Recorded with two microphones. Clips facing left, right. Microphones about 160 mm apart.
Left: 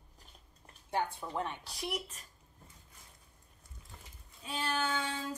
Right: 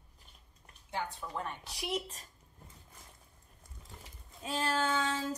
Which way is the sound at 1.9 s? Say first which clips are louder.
Right 3 dB; 30° right (ahead or behind).